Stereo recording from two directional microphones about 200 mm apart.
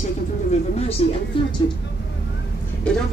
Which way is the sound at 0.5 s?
30° left (ahead or behind).